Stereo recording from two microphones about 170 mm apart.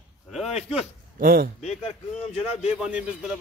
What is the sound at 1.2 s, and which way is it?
Speech, 60° right (ahead or behind).